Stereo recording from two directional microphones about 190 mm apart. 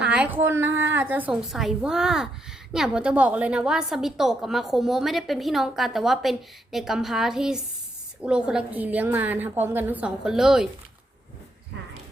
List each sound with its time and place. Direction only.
0.0 s a woman's voice: 5° right (ahead or behind)